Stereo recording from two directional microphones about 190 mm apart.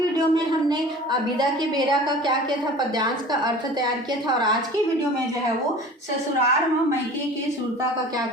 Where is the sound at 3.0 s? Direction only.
20° right (ahead or behind).